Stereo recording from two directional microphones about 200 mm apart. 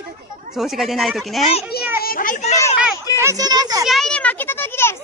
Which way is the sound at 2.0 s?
45° left (ahead or behind).